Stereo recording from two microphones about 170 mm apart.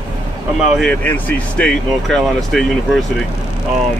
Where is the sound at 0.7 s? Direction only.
10° left (ahead or behind).